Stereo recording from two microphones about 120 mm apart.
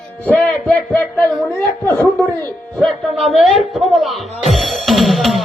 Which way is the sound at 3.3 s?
Centre (ahead or behind).